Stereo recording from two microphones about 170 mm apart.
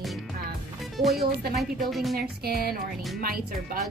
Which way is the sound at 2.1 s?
65° right (ahead or behind).